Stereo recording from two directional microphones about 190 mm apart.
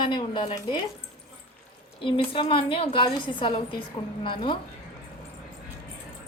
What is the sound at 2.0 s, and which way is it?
A woman's voice, 25° left (ahead or behind).